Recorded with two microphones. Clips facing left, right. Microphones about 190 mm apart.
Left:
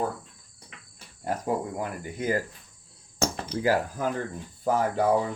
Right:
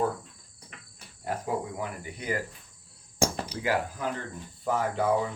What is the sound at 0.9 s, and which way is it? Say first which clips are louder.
Cricket: left 3 dB; 40° left (ahead or behind).